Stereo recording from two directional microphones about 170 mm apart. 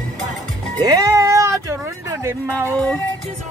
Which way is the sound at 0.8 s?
20° right (ahead or behind).